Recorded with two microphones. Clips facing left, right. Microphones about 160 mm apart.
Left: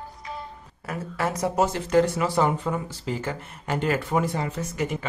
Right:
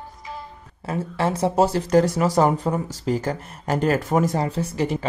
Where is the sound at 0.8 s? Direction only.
30° right (ahead or behind).